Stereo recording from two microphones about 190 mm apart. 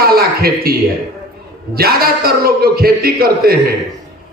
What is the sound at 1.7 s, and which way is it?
A man's voice, 55° right (ahead or behind).